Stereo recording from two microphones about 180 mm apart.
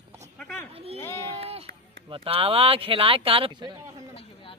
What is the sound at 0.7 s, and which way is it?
Speech, 35° right (ahead or behind).